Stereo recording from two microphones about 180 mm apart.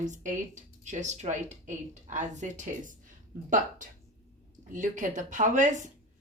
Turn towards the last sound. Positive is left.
turn(degrees=-45)  # may be behind; listen again after turning